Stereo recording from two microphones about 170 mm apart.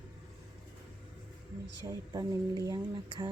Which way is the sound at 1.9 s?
20° right (ahead or behind).